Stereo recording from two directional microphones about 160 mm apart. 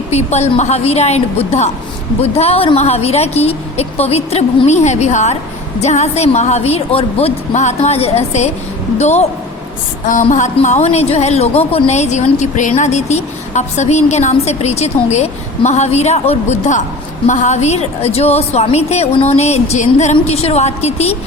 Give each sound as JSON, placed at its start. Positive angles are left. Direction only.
{"t": 0.1, "sound": "a woman's voice", "side_deg": 45}
{"t": 10.3, "sound": "a woman's voice", "side_deg": 50}